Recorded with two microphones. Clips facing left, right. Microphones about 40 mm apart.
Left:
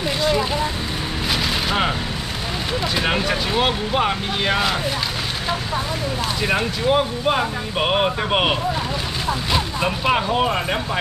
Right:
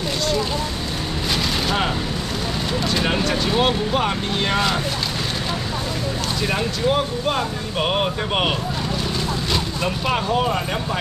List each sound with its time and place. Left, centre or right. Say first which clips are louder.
0.2 s a sound: left 3 dB; centre
2.9 s speech: even; centre
6.4 s speech: left 1 dB; centre